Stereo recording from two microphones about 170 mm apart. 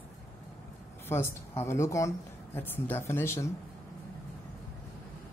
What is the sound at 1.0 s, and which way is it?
Speech, 15° left (ahead or behind).